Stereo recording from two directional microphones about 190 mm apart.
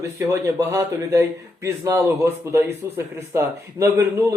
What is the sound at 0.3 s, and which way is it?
Speech, 15° right (ahead or behind).